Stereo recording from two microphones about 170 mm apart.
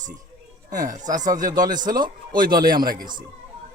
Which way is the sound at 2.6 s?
60° right (ahead or behind).